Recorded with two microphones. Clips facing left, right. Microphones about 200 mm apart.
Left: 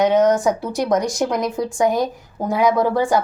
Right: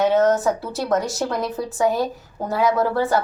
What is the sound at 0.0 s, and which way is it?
A woman's voice, 15° left (ahead or behind).